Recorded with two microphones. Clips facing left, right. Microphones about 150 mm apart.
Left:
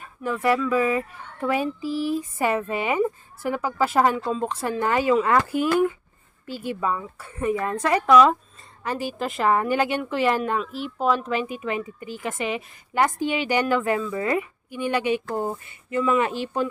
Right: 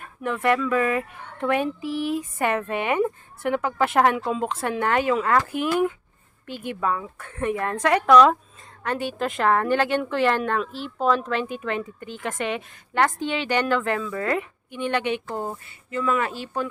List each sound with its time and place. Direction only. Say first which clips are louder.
0.0 s speech: even; centre (ahead or behind)
6.5 s speech: left 2 dB; 55° right (ahead or behind)
6.7 s speech: right 3 dB; 5° left (ahead or behind)